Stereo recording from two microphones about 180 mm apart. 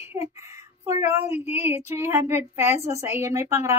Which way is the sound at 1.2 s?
35° left (ahead or behind).